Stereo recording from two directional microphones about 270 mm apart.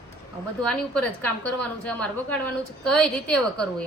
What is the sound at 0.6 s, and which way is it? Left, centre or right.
A woman's voice, centre.